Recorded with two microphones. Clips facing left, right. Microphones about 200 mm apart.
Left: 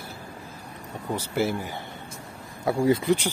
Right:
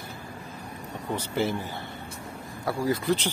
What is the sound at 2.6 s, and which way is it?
Speech, 25° left (ahead or behind).